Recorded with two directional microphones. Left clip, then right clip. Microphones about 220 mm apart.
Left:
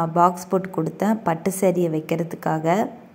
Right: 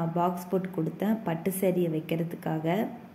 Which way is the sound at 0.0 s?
25° left (ahead or behind).